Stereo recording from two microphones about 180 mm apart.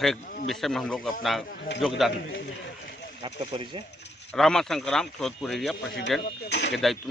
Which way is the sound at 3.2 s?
30° right (ahead or behind).